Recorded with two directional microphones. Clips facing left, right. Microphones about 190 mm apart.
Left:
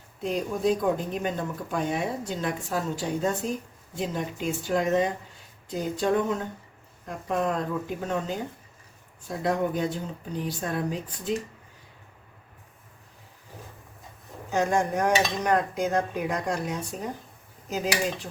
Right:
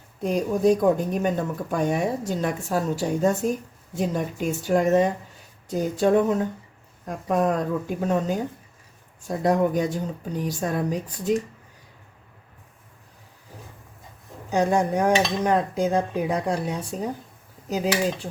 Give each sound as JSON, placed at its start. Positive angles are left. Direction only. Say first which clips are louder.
{"t": 0.2, "sound": "a woman's voice", "louder": "right 5 dB", "side_deg": -45}
{"t": 14.5, "sound": "dishes", "louder": "right 3 dB", "side_deg": -35}